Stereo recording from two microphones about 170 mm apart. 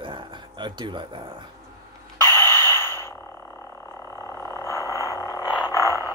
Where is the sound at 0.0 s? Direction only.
30° right (ahead or behind).